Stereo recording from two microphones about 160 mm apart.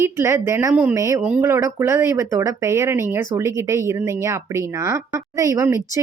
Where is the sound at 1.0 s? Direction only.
20° right (ahead or behind).